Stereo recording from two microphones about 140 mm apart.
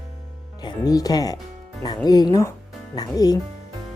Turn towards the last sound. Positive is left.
turn(degrees=25)  # may be behind; listen again after turning